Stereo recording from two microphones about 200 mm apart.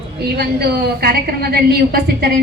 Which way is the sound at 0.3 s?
50° right (ahead or behind).